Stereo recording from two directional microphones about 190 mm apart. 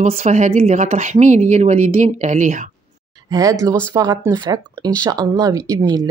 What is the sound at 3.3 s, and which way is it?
Speech, 20° right (ahead or behind).